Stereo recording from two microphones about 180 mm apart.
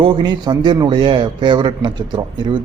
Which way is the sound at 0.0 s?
25° right (ahead or behind).